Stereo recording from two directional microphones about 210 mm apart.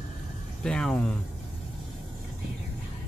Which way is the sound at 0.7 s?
5° left (ahead or behind).